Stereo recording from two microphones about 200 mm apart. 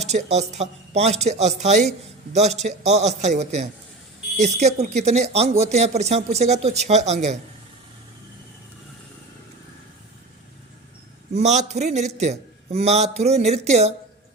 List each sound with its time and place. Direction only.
0.1 s a man's voice: 35° right (ahead or behind)
11.3 s a man's voice: 35° right (ahead or behind)